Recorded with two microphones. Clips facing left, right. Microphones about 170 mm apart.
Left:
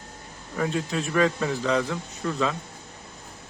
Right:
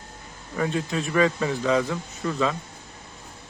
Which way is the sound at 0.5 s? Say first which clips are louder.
Right 1 dB; centre (ahead or behind).